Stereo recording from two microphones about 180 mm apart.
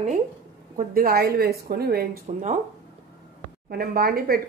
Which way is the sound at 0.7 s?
55° right (ahead or behind).